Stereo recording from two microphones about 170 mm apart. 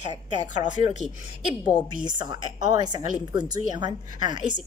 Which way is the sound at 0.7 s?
45° left (ahead or behind).